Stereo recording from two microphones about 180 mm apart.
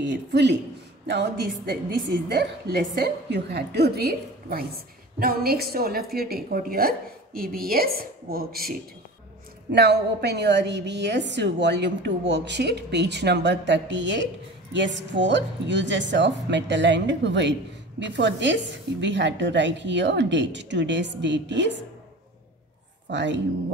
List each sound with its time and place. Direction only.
0.0 s a woman's voice: 75° right (ahead or behind); by 8.7 s 55° right (ahead or behind)
9.7 s a woman's voice: 65° right (ahead or behind)
23.0 s speech: 75° right (ahead or behind)